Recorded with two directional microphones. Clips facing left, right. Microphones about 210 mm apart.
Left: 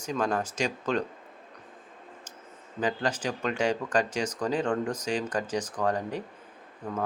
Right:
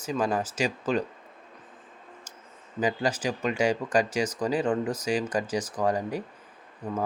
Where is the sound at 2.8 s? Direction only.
10° right (ahead or behind).